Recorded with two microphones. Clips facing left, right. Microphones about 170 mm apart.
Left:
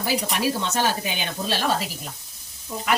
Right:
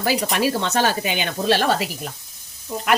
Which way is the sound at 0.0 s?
80° right.